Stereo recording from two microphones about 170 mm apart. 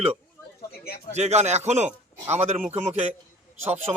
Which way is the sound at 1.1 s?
40° right (ahead or behind).